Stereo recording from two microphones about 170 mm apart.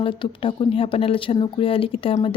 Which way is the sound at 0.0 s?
30° left (ahead or behind).